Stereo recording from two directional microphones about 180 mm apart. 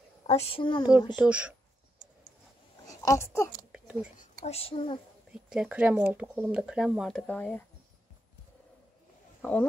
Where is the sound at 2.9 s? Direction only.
20° left (ahead or behind).